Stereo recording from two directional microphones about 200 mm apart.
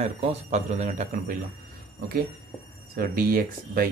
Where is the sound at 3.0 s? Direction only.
45° right (ahead or behind).